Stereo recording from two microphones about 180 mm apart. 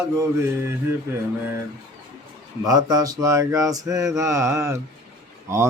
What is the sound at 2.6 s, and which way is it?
Mantra, 20° right (ahead or behind).